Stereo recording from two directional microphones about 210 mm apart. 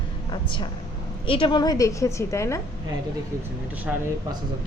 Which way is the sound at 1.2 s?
25° left (ahead or behind).